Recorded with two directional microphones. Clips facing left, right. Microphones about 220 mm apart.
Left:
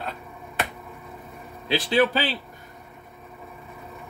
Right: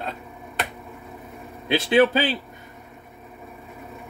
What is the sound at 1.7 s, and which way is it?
Speech, 20° right (ahead or behind).